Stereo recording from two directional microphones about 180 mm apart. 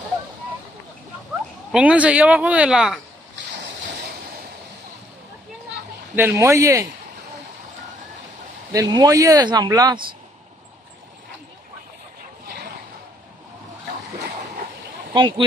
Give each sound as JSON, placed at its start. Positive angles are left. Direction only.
{"t": 1.7, "sound": "speech", "side_deg": -5}
{"t": 6.1, "sound": "speech", "side_deg": -15}
{"t": 8.7, "sound": "speech", "side_deg": -20}
{"t": 15.1, "sound": "speech", "side_deg": -25}